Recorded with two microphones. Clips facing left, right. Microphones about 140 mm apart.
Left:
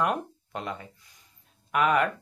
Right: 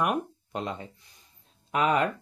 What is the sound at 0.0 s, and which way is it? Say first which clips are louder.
Speech: even; 15° right (ahead or behind).